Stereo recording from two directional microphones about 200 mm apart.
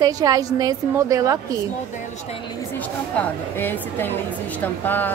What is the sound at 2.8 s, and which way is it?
A woman's voice, 10° left (ahead or behind).